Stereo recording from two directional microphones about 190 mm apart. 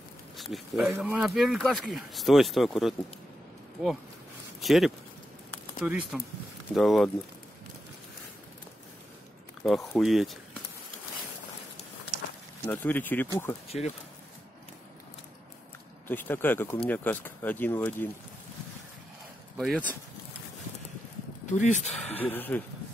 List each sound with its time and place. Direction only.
0.4 s speech: centre (ahead or behind)
4.6 s speech: centre (ahead or behind)
9.6 s speech: centre (ahead or behind)
12.6 s speech: 10° left (ahead or behind)
13.7 s speech: 35° left (ahead or behind)
16.1 s speech: 10° left (ahead or behind)
19.5 s speech: 5° left (ahead or behind)
21.5 s speech: 40° left (ahead or behind)
21.9 s speech: 10° left (ahead or behind)